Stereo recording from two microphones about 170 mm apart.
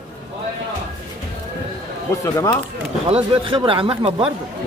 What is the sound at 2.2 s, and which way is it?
Speech, 20° left (ahead or behind).